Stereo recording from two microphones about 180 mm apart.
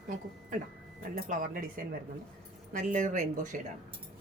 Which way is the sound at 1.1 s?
45° right (ahead or behind).